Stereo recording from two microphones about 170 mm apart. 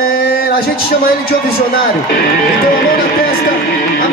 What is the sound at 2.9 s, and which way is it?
Music, 60° left (ahead or behind).